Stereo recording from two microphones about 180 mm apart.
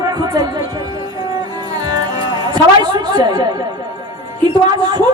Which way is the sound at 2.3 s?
20° right (ahead or behind).